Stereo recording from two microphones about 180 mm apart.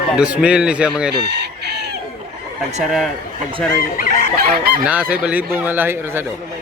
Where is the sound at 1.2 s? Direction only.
70° right (ahead or behind).